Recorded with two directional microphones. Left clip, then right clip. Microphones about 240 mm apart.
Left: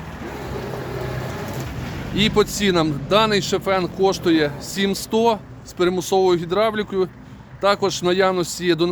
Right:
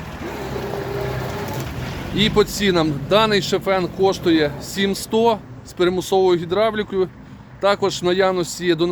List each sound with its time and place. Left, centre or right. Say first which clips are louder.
0.2 s vehicle: right 3 dB; right
2.1 s speech: right 1 dB; centre